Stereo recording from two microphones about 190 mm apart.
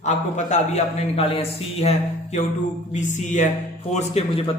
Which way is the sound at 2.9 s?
40° left (ahead or behind).